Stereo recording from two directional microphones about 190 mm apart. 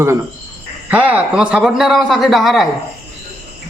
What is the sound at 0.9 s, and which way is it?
A man's voice, 10° right (ahead or behind).